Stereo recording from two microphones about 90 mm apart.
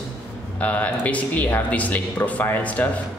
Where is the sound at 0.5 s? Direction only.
15° left (ahead or behind).